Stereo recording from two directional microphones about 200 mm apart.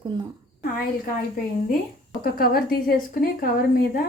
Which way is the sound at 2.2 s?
50° left (ahead or behind).